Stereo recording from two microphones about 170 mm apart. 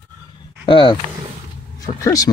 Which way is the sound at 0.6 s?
30° left (ahead or behind).